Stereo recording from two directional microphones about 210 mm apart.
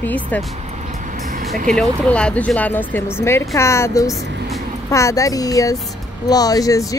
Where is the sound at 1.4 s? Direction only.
40° right (ahead or behind).